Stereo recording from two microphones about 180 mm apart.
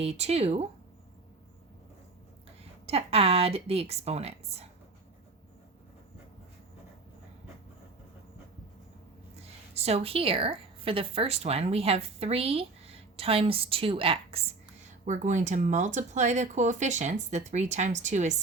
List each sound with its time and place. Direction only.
0.0 s speech: 35° right (ahead or behind)
2.8 s speech: 35° right (ahead or behind)
9.3 s a woman's voice: 35° right (ahead or behind)
15.0 s speech: 45° right (ahead or behind)